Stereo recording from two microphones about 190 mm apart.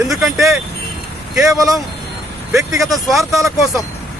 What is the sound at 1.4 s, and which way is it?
Speech, 15° right (ahead or behind).